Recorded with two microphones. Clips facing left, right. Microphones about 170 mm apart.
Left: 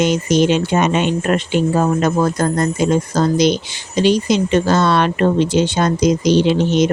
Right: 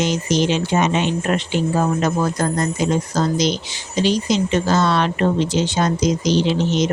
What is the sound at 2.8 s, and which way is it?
Speech, 55° left (ahead or behind).